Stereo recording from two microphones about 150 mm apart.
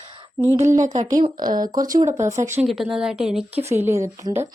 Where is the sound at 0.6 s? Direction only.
55° right (ahead or behind).